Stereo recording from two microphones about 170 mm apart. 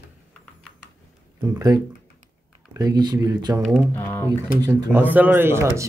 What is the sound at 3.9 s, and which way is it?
Speech, 10° left (ahead or behind).